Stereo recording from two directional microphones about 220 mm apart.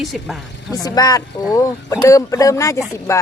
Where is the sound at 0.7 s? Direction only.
15° left (ahead or behind).